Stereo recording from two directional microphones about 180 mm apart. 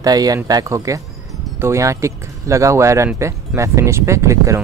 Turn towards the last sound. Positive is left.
turn(degrees=-15)  # may be behind; listen again after turning